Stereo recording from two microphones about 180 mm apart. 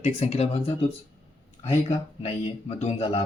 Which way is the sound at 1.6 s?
35° left (ahead or behind).